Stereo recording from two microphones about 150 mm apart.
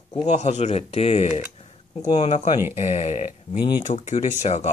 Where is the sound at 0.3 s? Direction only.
50° left (ahead or behind).